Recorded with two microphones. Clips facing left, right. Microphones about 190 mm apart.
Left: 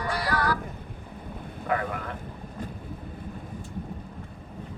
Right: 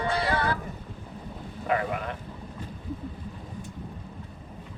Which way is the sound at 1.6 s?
20° right (ahead or behind).